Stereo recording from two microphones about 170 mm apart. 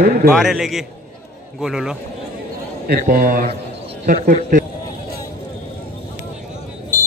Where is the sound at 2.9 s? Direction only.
55° right (ahead or behind).